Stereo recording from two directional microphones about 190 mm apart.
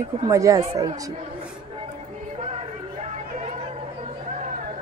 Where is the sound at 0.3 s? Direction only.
15° right (ahead or behind).